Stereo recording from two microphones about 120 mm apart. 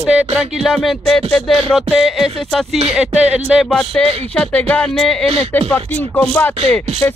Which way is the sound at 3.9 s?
10° left (ahead or behind).